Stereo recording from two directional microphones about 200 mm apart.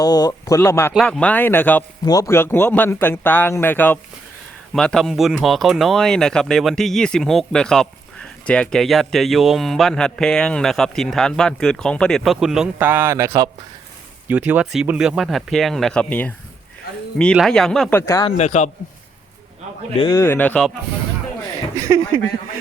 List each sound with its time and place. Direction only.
0.0 s speech: 20° left (ahead or behind); by 18.0 s 5° left (ahead or behind)
18.0 s speech: 15° left (ahead or behind)
18.3 s a man's voice: 35° left (ahead or behind)
20.1 s speech: 10° left (ahead or behind)
21.8 s speech: 15° right (ahead or behind)